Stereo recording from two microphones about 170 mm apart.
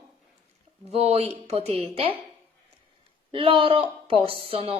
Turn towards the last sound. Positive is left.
turn(degrees=-35)  # may be behind; listen again after turning